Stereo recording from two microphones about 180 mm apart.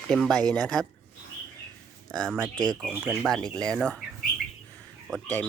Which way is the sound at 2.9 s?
10° right (ahead or behind).